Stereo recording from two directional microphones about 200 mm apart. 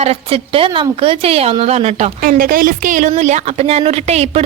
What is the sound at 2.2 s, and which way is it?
A woman's voice, 45° right (ahead or behind).